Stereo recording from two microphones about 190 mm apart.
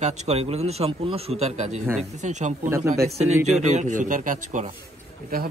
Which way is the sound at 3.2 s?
35° right (ahead or behind).